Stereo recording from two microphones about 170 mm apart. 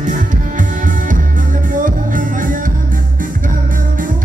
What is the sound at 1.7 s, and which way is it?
Music, 50° right (ahead or behind).